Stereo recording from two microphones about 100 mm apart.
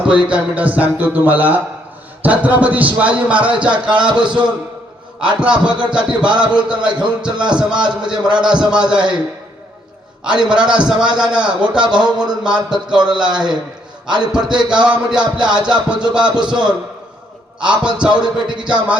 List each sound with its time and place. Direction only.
0.0 s music: 10° right (ahead or behind)
10.2 s music: 10° right (ahead or behind)